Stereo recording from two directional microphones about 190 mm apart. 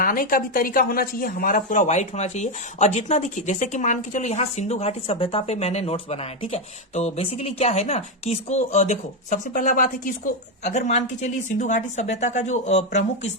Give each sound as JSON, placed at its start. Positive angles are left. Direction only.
{"t": 0.0, "sound": "speech", "side_deg": 50}